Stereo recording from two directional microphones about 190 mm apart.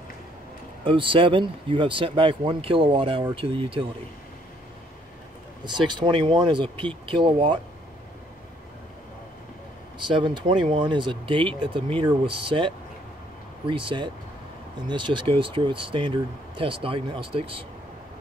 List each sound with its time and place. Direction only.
0.8 s speech: 25° right (ahead or behind)
5.7 s speech: 25° right (ahead or behind)
9.9 s speech: 25° right (ahead or behind)